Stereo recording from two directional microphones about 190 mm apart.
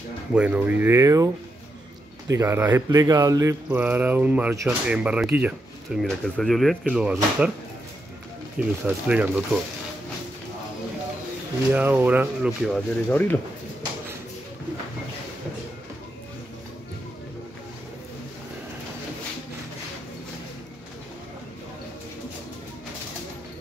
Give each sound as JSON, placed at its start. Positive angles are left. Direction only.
{"t": 0.3, "sound": "speech", "side_deg": -5}
{"t": 8.5, "sound": "speech", "side_deg": -5}
{"t": 11.7, "sound": "speech", "side_deg": -10}